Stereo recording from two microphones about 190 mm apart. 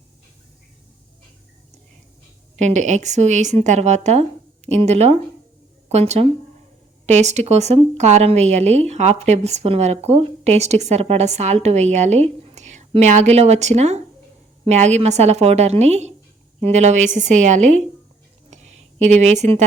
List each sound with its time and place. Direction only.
2.6 s a woman's voice: 40° right (ahead or behind)
19.0 s a woman's voice: 35° right (ahead or behind)